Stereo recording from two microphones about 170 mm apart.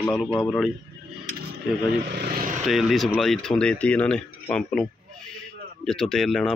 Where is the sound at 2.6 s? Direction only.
Centre (ahead or behind).